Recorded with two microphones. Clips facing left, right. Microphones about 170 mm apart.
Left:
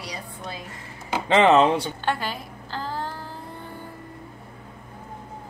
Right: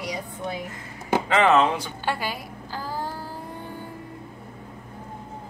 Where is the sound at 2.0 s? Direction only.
10° right (ahead or behind).